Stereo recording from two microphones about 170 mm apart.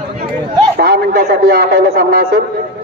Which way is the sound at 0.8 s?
65° right (ahead or behind).